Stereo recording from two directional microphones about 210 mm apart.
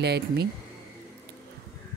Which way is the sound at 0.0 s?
50° right (ahead or behind).